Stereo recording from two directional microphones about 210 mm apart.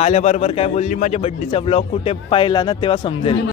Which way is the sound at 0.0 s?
30° left (ahead or behind).